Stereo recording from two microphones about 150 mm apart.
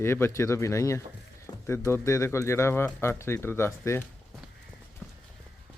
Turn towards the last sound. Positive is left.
turn(degrees=15)  # may be behind; listen again after turning